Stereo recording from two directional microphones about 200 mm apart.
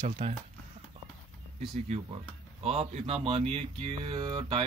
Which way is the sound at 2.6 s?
30° right (ahead or behind).